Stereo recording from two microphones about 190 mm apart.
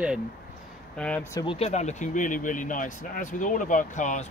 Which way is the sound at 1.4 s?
30° left (ahead or behind).